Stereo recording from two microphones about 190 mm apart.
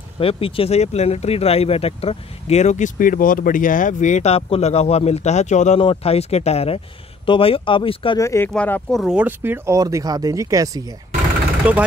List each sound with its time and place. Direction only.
0.2 s speech: 30° left (ahead or behind)
8.2 s speech: 15° left (ahead or behind)
9.0 s speech: 5° right (ahead or behind)
11.6 s speech: 5° right (ahead or behind)